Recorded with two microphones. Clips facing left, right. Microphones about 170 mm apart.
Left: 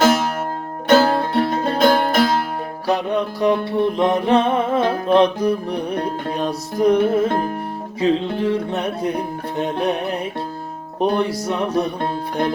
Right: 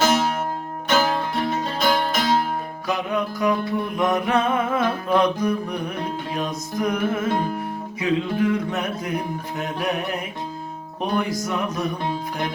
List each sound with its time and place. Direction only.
0.9 s music: 40° left (ahead or behind)
1.4 s music: 55° left (ahead or behind)
2.8 s music: 35° left (ahead or behind)